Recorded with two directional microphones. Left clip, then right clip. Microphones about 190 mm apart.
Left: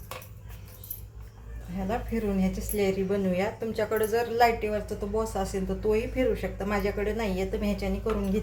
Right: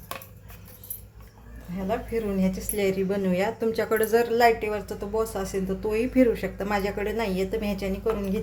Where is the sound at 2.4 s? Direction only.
45° right (ahead or behind).